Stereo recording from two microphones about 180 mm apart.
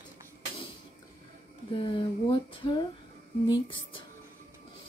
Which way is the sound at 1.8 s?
30° left (ahead or behind).